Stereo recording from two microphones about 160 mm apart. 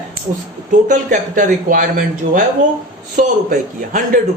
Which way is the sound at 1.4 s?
55° right (ahead or behind).